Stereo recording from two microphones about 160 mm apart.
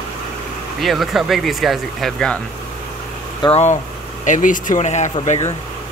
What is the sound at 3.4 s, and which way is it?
Speech, 35° left (ahead or behind).